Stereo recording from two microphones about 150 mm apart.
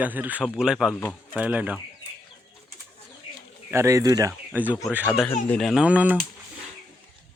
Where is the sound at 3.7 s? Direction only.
20° right (ahead or behind).